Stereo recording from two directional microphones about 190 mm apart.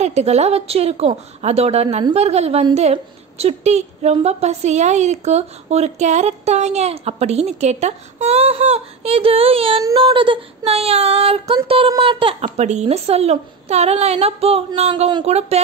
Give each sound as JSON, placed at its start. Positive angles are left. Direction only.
{"t": 0.0, "sound": "a woman's voice", "side_deg": -35}
{"t": 9.8, "sound": "child singing", "side_deg": -25}
{"t": 12.4, "sound": "a woman's voice", "side_deg": -40}